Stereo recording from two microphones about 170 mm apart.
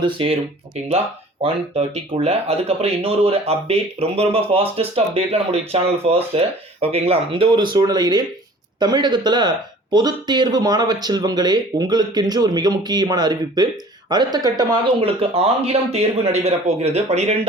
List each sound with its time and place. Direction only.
0.0 s speech: 30° right (ahead or behind)